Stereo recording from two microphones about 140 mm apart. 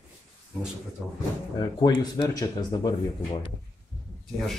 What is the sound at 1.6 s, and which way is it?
Speech, 30° left (ahead or behind).